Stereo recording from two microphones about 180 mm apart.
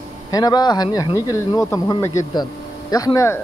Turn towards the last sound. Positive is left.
turn(degrees=20)  # may be behind; listen again after turning